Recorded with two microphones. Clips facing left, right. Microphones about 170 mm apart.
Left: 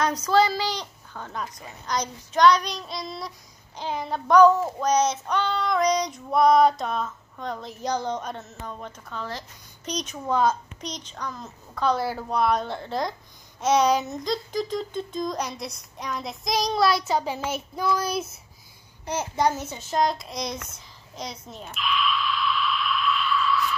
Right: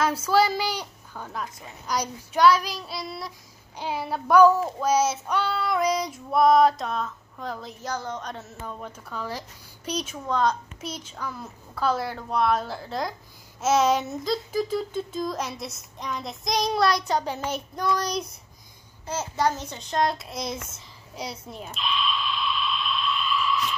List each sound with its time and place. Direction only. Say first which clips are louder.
0.0 s a woman's voice: left 1 dB; 5° right (ahead or behind)
7.8 s speech: left 5 dB; 15° left (ahead or behind)
8.4 s a woman's voice: even; 5° right (ahead or behind)
10.1 s speech: left 2 dB; 10° left (ahead or behind)
10.8 s a woman's voice: even; 5° right (ahead or behind)
21.7 s a sound: left 3 dB; 25° right (ahead or behind)